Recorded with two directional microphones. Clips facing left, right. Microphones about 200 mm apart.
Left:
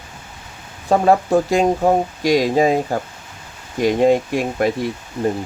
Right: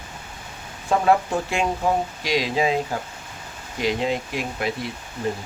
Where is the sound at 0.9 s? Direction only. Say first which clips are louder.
Left 5 dB; 35° left (ahead or behind).